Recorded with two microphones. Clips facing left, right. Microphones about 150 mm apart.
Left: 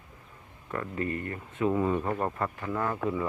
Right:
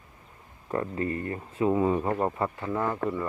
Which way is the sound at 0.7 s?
25° right (ahead or behind).